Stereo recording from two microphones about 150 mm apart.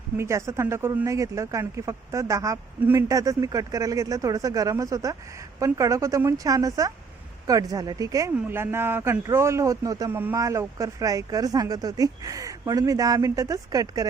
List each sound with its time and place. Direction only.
0.2 s speech: 20° right (ahead or behind)